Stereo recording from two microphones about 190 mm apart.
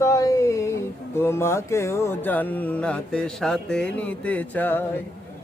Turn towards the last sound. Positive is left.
turn(degrees=10)  # may be behind; listen again after turning